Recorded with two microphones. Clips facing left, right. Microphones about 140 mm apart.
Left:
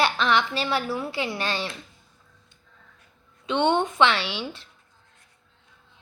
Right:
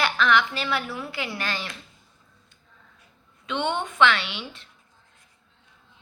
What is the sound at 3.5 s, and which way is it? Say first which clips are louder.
A woman's voice: left 5 dB; 35° left (ahead or behind).